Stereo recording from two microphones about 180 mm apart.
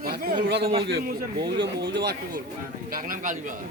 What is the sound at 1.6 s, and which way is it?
Speech, 75° right (ahead or behind).